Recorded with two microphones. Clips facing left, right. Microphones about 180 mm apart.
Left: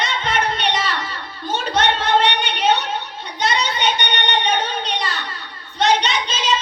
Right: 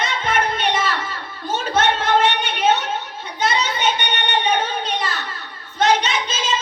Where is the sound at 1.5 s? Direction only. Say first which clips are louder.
Even; 5° right (ahead or behind).